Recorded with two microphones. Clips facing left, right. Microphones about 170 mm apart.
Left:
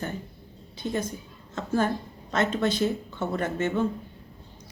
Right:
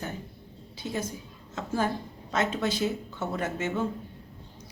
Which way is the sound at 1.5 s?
10° right (ahead or behind).